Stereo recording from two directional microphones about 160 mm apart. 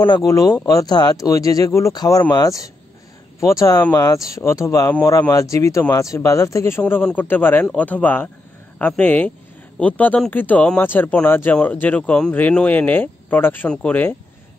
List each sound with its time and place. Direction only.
0.0 s speech: 25° left (ahead or behind)
3.3 s speech: 20° left (ahead or behind)